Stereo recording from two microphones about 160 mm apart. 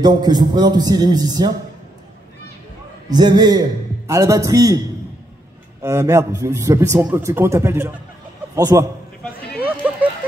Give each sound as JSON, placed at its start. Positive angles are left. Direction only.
{"t": 0.0, "sound": "a man's voice", "side_deg": -25}
{"t": 3.1, "sound": "a man's voice", "side_deg": -25}
{"t": 5.8, "sound": "a man's voice", "side_deg": -20}
{"t": 9.6, "sound": "a sound", "side_deg": -10}